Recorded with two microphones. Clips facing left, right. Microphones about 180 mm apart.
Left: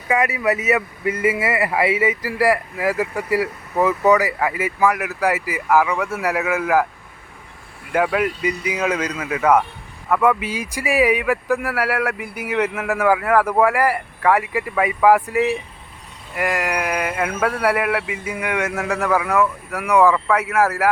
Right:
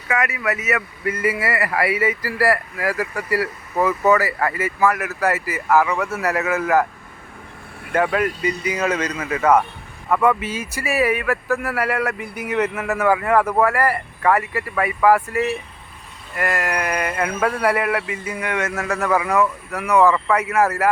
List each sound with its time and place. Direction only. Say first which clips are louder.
0.2 s speech: left 4 dB; 30° left (ahead or behind)
1.0 s speech: left 1 dB; 20° left (ahead or behind)
7.9 s a man's voice: even; 5° left (ahead or behind)